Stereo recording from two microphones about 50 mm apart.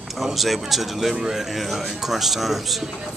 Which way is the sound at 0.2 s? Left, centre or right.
Centre.